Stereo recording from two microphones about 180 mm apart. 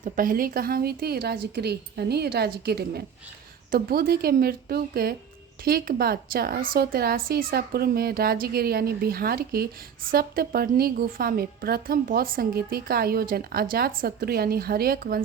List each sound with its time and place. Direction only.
0.0 s a woman's voice: 50° right (ahead or behind)